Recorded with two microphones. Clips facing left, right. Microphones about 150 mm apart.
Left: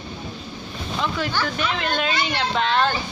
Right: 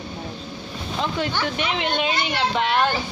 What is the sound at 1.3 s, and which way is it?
A woman's voice, 20° right (ahead or behind).